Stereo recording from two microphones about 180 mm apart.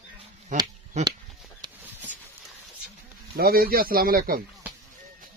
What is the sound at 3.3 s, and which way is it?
Speech, 55° right (ahead or behind).